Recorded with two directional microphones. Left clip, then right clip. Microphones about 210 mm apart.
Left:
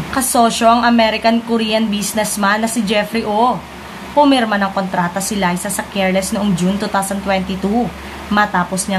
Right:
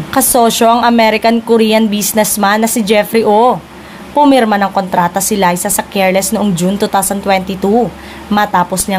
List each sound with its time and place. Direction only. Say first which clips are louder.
0.1 s a woman's voice: right 4 dB; 50° right (ahead or behind)